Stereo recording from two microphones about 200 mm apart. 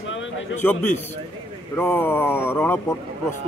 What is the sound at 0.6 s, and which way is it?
A man's voice, 10° left (ahead or behind).